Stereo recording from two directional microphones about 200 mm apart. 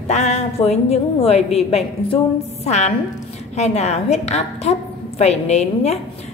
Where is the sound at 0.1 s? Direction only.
35° left (ahead or behind).